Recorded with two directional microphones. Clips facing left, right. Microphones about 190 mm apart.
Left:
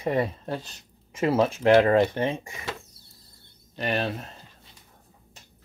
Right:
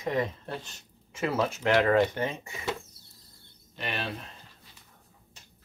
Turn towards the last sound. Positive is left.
turn(degrees=40)  # may be behind; listen again after turning